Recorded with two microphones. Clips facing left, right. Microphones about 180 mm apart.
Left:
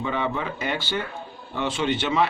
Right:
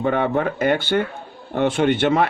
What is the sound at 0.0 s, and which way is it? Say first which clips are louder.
Speech: right 7 dB; 55° right (ahead or behind).